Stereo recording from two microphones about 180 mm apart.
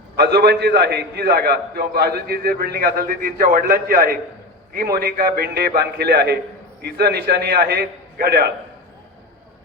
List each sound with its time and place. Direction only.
0.2 s a man's voice: 65° right (ahead or behind)